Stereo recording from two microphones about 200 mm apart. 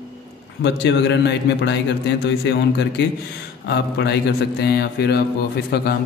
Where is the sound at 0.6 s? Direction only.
60° left (ahead or behind).